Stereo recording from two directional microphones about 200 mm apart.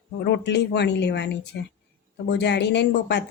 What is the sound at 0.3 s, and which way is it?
A woman's voice, 60° left (ahead or behind).